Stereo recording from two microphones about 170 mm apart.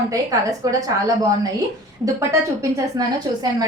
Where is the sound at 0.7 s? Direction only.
20° right (ahead or behind).